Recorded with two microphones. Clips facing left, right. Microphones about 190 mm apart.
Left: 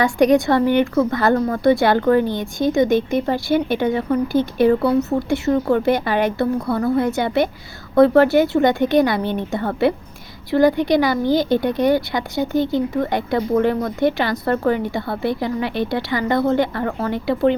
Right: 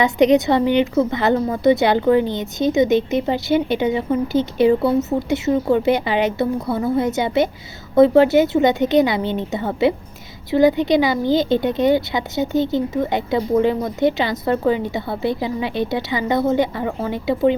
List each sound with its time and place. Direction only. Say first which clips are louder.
0.0 s a woman's voice: even; 20° right (ahead or behind)